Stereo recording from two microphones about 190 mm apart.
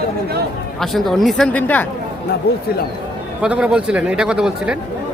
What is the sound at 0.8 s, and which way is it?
Speech, centre (ahead or behind).